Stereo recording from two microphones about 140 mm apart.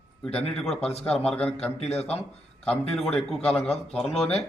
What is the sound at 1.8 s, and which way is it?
Speech, 50° left (ahead or behind).